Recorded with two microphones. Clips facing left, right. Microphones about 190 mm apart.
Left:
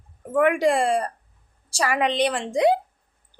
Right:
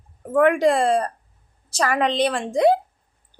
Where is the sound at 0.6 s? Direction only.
15° left (ahead or behind).